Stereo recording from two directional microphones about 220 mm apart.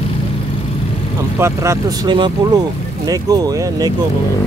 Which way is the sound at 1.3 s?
15° right (ahead or behind).